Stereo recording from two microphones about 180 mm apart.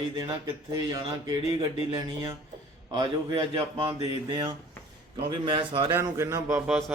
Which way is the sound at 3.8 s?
25° right (ahead or behind).